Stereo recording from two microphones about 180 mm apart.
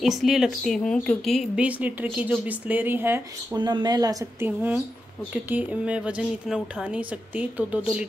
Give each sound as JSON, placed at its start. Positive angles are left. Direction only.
{"t": 0.0, "sound": "speech", "side_deg": 0}
{"t": 3.5, "sound": "speech", "side_deg": -25}